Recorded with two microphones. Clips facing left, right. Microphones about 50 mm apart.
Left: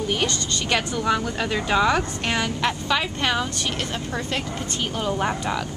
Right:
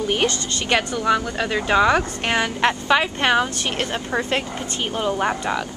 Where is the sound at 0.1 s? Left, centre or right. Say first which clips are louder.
Right 3 dB; right.